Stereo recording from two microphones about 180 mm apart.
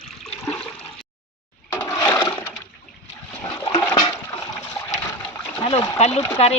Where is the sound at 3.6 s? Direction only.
20° left (ahead or behind).